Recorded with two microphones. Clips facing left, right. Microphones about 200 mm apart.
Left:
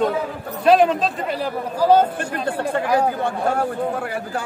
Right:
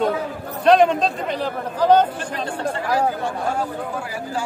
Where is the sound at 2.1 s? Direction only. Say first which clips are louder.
Left 3 dB; 55° left (ahead or behind).